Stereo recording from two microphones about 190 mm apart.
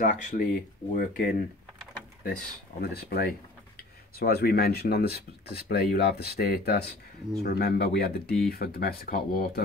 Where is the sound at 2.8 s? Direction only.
60° left (ahead or behind).